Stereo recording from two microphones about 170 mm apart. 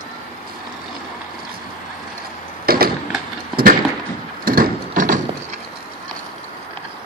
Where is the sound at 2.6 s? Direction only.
60° right (ahead or behind).